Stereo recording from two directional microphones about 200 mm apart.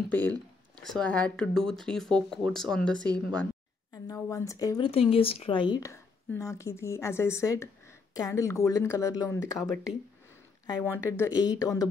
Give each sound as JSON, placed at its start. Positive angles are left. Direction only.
{"t": 0.1, "sound": "speech", "side_deg": 10}
{"t": 3.9, "sound": "speech", "side_deg": 15}
{"t": 10.7, "sound": "speech", "side_deg": 15}